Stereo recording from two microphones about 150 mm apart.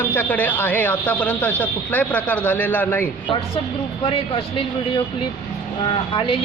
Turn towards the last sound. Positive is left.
turn(degrees=35)  # may be behind; listen again after turning